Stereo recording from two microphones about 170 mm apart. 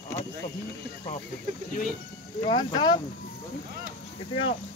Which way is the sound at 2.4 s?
30° left (ahead or behind).